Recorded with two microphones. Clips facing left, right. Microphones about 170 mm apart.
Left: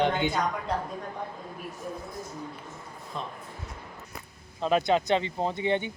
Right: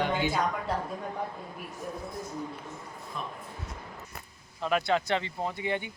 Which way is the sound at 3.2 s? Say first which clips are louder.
Left 2 dB; 25° left (ahead or behind).